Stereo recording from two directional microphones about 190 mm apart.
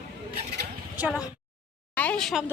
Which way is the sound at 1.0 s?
5° right (ahead or behind).